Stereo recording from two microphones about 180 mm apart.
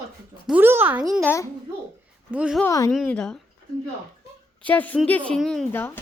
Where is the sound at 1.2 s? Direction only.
15° left (ahead or behind).